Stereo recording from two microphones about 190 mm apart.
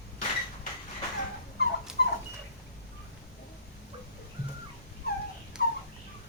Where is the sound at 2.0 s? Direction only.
55° left (ahead or behind).